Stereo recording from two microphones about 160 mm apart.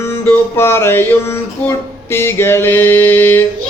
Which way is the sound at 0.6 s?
15° left (ahead or behind).